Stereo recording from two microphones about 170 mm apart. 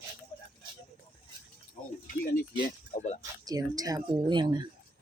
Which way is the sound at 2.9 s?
55° left (ahead or behind).